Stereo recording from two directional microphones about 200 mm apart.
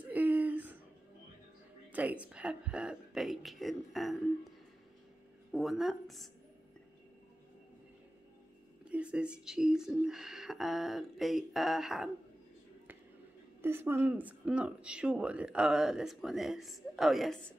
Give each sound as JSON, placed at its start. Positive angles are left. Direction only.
{"t": 0.1, "sound": "a sound", "side_deg": -10}
{"t": 1.9, "sound": "speech", "side_deg": -10}
{"t": 8.8, "sound": "speech", "side_deg": -5}
{"t": 13.6, "sound": "speech", "side_deg": -10}